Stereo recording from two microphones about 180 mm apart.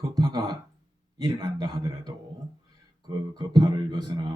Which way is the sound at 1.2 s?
25° right (ahead or behind).